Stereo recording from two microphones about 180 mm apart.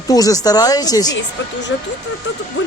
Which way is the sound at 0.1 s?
20° left (ahead or behind).